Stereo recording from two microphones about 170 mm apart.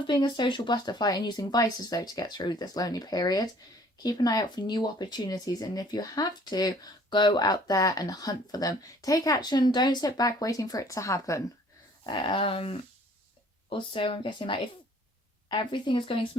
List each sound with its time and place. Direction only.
0.1 s speech: 25° left (ahead or behind)
12.0 s dog: 25° left (ahead or behind)
13.7 s speech: 30° left (ahead or behind)